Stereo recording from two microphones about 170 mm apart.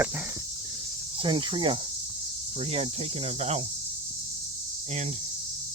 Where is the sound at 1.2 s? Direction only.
30° right (ahead or behind).